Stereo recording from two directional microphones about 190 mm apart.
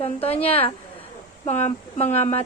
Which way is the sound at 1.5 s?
35° left (ahead or behind).